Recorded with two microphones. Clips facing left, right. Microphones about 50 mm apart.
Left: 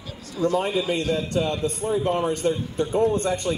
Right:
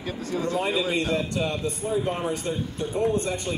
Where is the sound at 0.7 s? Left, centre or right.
Right.